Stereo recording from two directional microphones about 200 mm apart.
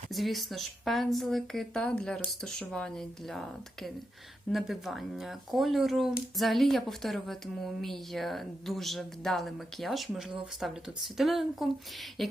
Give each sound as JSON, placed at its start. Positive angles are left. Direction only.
{"t": 0.1, "sound": "speech", "side_deg": 0}
{"t": 4.5, "sound": "speech", "side_deg": 0}